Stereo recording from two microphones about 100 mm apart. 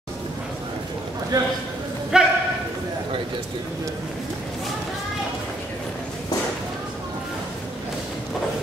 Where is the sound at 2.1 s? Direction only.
5° right (ahead or behind).